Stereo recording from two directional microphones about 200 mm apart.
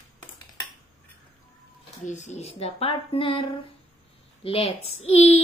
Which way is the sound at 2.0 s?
35° left (ahead or behind).